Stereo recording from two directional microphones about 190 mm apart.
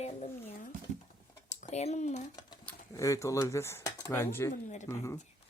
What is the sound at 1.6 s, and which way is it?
Speech, 35° left (ahead or behind).